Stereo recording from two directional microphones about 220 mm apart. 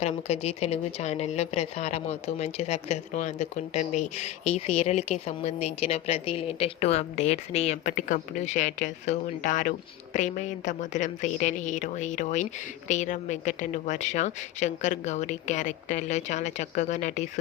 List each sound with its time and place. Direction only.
0.0 s speech: 30° left (ahead or behind)